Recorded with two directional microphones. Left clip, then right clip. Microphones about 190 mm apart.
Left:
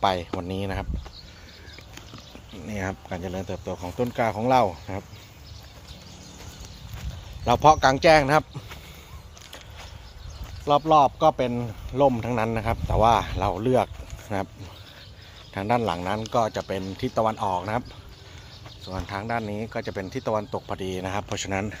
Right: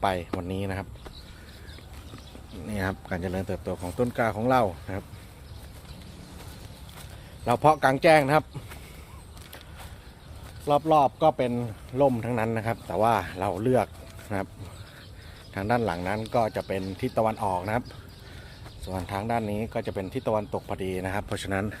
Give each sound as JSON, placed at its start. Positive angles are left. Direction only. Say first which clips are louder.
{"t": 0.0, "sound": "speech", "louder": "left 3 dB", "side_deg": 15}
{"t": 2.6, "sound": "speech", "louder": "even", "side_deg": -15}
{"t": 3.8, "sound": "speech", "louder": "left 1 dB", "side_deg": -10}
{"t": 7.4, "sound": "speech", "louder": "left 4 dB", "side_deg": 15}
{"t": 10.7, "sound": "speech", "louder": "left 3 dB", "side_deg": 25}
{"t": 15.5, "sound": "speech", "louder": "left 2 dB", "side_deg": 5}
{"t": 19.0, "sound": "speech", "louder": "even", "side_deg": -30}
{"t": 19.8, "sound": "speech", "louder": "even", "side_deg": -5}